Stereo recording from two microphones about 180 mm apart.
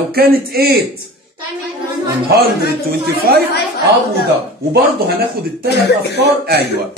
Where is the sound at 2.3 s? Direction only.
60° right (ahead or behind).